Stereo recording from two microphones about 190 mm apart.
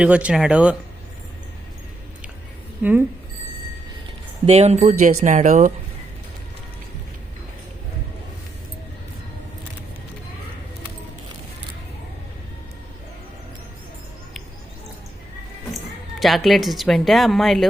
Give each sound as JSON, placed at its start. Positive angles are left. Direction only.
{"t": 0.0, "sound": "speech", "side_deg": -5}
{"t": 4.4, "sound": "speech", "side_deg": -35}
{"t": 16.2, "sound": "speech", "side_deg": 0}